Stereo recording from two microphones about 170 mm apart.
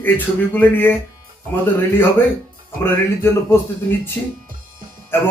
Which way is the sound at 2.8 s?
15° left (ahead or behind).